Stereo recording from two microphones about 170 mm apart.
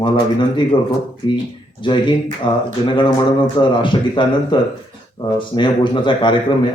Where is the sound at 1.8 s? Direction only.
30° left (ahead or behind).